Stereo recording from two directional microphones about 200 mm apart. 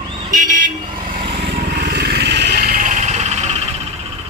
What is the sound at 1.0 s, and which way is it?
Vehicle, 50° right (ahead or behind).